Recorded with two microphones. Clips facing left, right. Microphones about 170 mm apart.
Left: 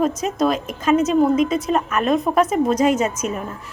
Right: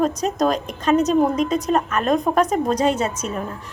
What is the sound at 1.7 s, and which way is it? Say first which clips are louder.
Speech: even; 5° left (ahead or behind).